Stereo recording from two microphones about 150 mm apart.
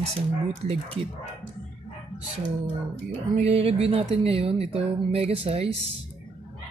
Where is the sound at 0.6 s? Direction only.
40° right (ahead or behind).